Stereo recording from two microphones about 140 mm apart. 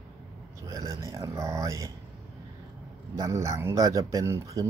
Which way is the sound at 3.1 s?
20° right (ahead or behind).